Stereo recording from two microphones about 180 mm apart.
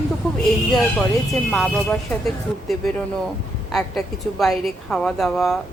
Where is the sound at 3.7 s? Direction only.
Centre (ahead or behind).